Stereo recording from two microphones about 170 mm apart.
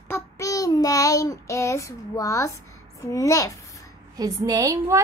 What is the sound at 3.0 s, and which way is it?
Speech, 20° left (ahead or behind).